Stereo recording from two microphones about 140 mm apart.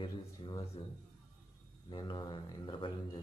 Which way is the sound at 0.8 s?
40° left (ahead or behind).